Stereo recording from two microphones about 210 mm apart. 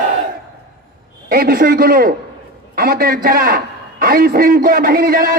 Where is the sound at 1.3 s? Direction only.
45° right (ahead or behind).